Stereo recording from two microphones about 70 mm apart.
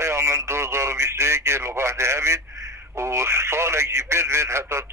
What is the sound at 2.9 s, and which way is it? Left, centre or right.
Speech, right.